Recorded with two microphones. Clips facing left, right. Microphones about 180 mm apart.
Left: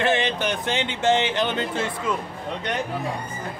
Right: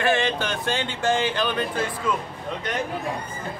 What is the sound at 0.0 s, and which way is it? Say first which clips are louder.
Speech: even; 20° left (ahead or behind).